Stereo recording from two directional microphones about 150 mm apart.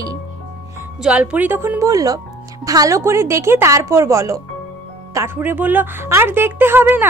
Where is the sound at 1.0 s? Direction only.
5° right (ahead or behind).